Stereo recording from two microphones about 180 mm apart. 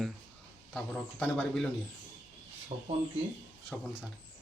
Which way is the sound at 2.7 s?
40° right (ahead or behind).